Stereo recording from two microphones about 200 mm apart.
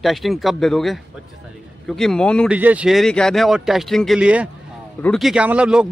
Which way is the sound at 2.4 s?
5° right (ahead or behind).